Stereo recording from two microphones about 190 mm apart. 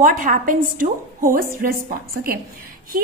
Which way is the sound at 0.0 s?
45° right (ahead or behind).